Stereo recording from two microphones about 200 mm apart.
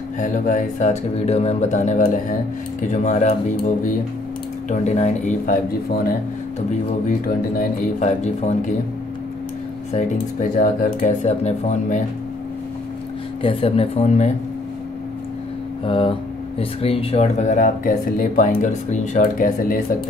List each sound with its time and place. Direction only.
0.2 s speech: 40° left (ahead or behind)
4.6 s speech: 35° left (ahead or behind)
8.0 s speech: 35° left (ahead or behind)
10.6 s speech: 40° left (ahead or behind)
13.4 s speech: 25° left (ahead or behind)
15.8 s speech: 25° left (ahead or behind); by 19.8 s 45° left (ahead or behind)